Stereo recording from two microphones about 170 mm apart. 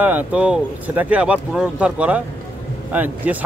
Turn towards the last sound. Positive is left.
turn(degrees=-10)  # may be behind; listen again after turning